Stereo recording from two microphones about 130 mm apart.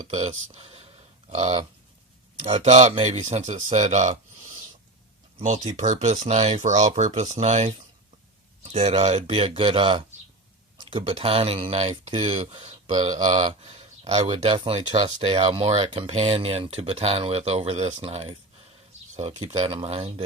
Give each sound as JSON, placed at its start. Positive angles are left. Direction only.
{"t": 0.1, "sound": "speech", "side_deg": -55}
{"t": 2.6, "sound": "speech", "side_deg": -60}
{"t": 5.7, "sound": "speech", "side_deg": -65}
{"t": 8.6, "sound": "speech", "side_deg": -45}
{"t": 12.9, "sound": "speech", "side_deg": -35}
{"t": 13.3, "sound": "a sound", "side_deg": -50}
{"t": 14.2, "sound": "speech", "side_deg": -35}
{"t": 19.1, "sound": "speech", "side_deg": -60}
{"t": 19.6, "sound": "speech", "side_deg": -50}